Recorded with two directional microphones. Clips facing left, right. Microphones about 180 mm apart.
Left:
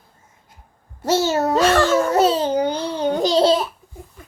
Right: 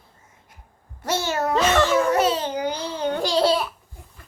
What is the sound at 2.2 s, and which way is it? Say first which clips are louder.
Speech: left 5 dB; 30° left (ahead or behind).